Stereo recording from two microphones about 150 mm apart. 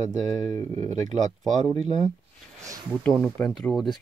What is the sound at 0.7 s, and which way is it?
Speech, 50° right (ahead or behind).